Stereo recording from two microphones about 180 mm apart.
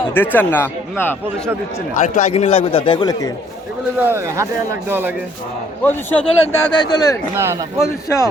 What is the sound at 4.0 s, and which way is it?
Speech, 10° right (ahead or behind).